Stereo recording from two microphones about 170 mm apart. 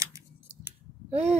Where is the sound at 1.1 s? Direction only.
40° right (ahead or behind).